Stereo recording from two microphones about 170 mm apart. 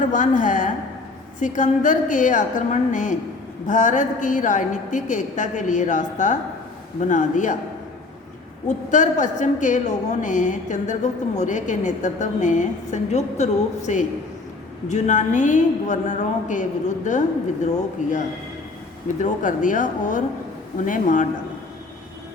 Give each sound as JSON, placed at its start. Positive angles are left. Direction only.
{"t": 0.1, "sound": "a woman's voice", "side_deg": 50}
{"t": 8.6, "sound": "a woman's voice", "side_deg": 45}
{"t": 19.2, "sound": "a woman's voice", "side_deg": 50}